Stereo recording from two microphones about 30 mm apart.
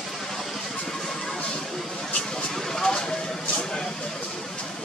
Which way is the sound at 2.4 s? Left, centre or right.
Centre.